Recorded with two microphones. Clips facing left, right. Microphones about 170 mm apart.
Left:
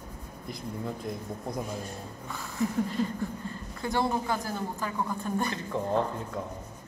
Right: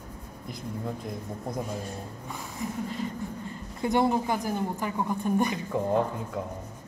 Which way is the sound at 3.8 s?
15° right (ahead or behind).